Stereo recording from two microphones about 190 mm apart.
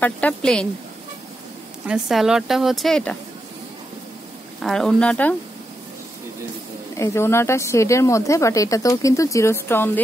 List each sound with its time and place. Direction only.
0.0 s speech: 5° left (ahead or behind)
1.9 s speech: centre (ahead or behind)
4.6 s speech: centre (ahead or behind)
7.0 s speech: 15° left (ahead or behind)